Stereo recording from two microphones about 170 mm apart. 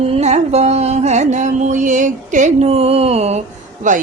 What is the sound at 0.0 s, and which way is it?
Music, 40° right (ahead or behind).